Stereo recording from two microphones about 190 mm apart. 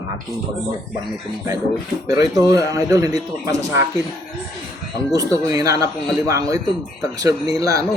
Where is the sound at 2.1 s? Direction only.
20° right (ahead or behind).